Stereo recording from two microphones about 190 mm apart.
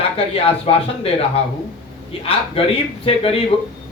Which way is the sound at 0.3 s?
30° left (ahead or behind).